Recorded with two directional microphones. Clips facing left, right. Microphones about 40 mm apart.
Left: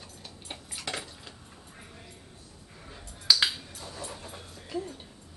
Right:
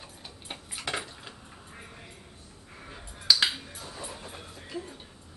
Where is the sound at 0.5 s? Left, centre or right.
Centre.